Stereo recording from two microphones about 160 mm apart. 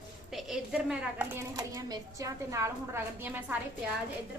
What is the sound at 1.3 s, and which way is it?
Speech, 20° right (ahead or behind).